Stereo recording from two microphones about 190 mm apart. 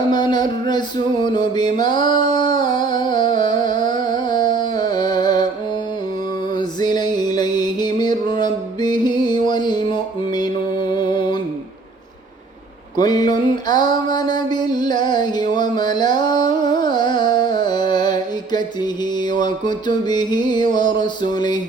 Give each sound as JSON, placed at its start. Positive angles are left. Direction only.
{"t": 0.1, "sound": "music", "side_deg": 20}
{"t": 2.6, "sound": "a sound", "side_deg": 25}
{"t": 6.5, "sound": "music", "side_deg": 20}
{"t": 13.0, "sound": "mantra", "side_deg": 20}
{"t": 15.5, "sound": "music", "side_deg": 25}